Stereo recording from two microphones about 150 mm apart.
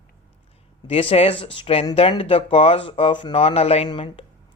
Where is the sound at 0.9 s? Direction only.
40° left (ahead or behind).